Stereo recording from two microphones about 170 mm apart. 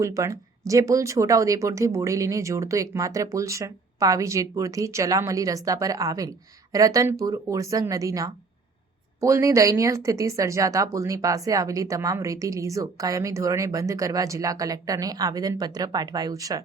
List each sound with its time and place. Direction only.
0.0 s speech: 15° right (ahead or behind)